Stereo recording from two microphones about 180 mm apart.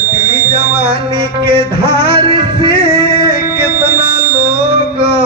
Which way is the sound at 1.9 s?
60° left (ahead or behind).